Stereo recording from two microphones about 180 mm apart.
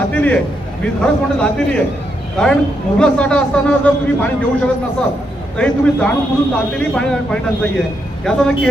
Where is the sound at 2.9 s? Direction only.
5° left (ahead or behind).